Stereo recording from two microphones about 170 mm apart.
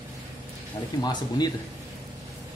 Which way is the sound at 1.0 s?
25° left (ahead or behind).